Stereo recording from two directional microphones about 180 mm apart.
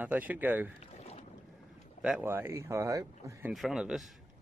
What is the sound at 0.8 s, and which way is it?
Boat, 35° left (ahead or behind).